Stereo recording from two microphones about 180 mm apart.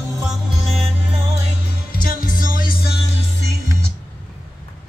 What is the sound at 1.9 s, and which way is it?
Music, 50° left (ahead or behind).